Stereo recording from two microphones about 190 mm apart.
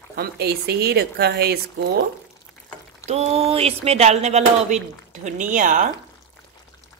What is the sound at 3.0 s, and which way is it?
Mantra, 35° right (ahead or behind).